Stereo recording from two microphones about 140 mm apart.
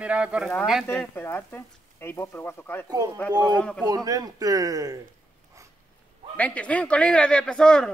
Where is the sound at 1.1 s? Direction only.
15° left (ahead or behind).